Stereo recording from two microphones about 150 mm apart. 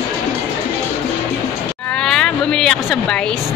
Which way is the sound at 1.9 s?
5° left (ahead or behind).